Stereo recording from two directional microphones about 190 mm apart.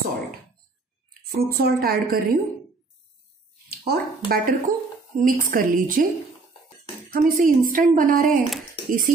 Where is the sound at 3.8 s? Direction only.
55° right (ahead or behind).